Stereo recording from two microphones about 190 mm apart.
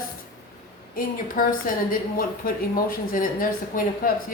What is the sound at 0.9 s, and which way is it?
A woman's voice, 50° left (ahead or behind).